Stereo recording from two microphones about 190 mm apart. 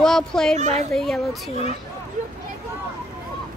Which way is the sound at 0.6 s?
35° right (ahead or behind).